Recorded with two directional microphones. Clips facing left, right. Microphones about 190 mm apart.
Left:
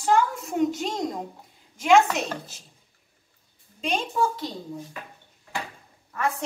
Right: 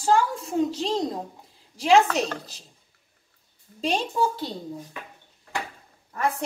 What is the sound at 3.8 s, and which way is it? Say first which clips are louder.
Speech: right 1 dB; 35° right (ahead or behind).